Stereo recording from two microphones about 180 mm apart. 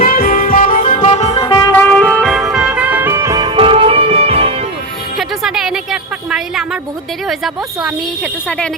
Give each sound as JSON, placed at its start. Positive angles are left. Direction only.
{"t": 0.0, "sound": "music", "side_deg": 50}
{"t": 1.4, "sound": "music", "side_deg": 25}
{"t": 1.7, "sound": "music", "side_deg": 10}
{"t": 3.5, "sound": "music", "side_deg": -30}
{"t": 5.1, "sound": "music", "side_deg": 0}
{"t": 7.3, "sound": "speech", "side_deg": 0}